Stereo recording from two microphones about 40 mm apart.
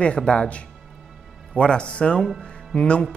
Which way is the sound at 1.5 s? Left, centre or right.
Left.